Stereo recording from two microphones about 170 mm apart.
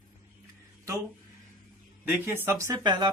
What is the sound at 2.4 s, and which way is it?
Speech, 15° right (ahead or behind).